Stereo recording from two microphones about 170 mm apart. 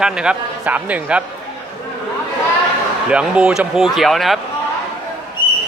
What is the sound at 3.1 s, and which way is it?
A man's voice, 5° right (ahead or behind).